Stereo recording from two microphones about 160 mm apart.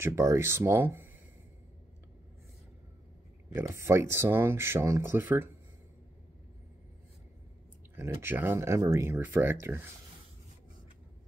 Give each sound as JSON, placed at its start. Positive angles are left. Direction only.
{"t": 0.0, "sound": "speech", "side_deg": -15}
{"t": 3.5, "sound": "speech", "side_deg": -15}
{"t": 7.9, "sound": "speech", "side_deg": -15}